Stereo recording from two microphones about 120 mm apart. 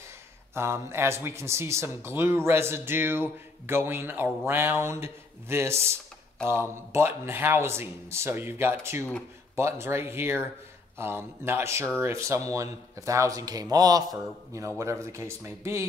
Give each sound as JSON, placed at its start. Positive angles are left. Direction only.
{"t": 0.6, "sound": "speech", "side_deg": -20}